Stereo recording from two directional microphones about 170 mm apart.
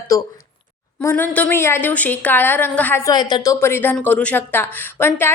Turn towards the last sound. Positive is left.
turn(degrees=15)  # may be behind; listen again after turning